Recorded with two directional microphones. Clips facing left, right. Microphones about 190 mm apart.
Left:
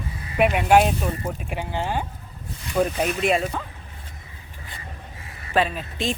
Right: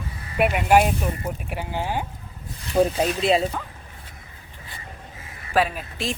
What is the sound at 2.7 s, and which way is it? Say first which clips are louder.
Speech: right 2 dB; 30° right (ahead or behind).